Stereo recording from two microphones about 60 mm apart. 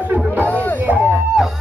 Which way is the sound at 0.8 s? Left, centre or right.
Right.